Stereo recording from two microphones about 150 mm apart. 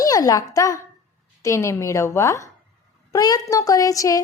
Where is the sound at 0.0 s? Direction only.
25° left (ahead or behind).